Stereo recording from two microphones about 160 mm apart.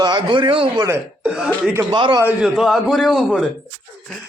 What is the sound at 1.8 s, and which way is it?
Speech, 30° right (ahead or behind).